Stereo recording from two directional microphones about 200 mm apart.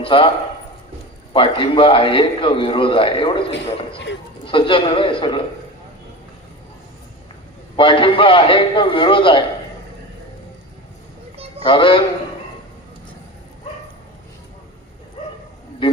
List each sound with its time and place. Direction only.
0.0 s a man's voice: 25° left (ahead or behind)
1.3 s a man's voice: 25° left (ahead or behind)
4.4 s a man's voice: 25° left (ahead or behind)
7.8 s a man's voice: 25° left (ahead or behind)
11.6 s a man's voice: 25° left (ahead or behind)